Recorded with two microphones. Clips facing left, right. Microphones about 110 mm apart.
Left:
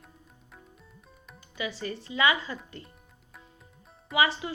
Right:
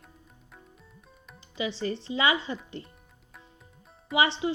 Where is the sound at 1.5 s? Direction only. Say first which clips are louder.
Right 4 dB; 30° right (ahead or behind).